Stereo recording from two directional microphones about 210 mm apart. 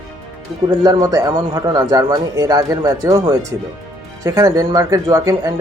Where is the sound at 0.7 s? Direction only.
15° right (ahead or behind).